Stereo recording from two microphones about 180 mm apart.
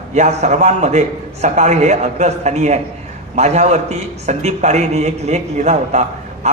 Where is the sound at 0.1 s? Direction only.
40° right (ahead or behind).